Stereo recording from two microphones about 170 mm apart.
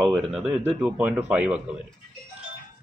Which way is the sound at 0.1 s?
5° right (ahead or behind).